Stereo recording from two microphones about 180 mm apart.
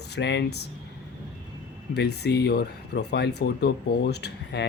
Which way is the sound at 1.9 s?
65° left (ahead or behind).